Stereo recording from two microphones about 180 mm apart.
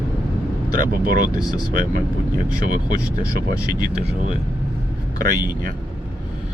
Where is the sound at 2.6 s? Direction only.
50° right (ahead or behind).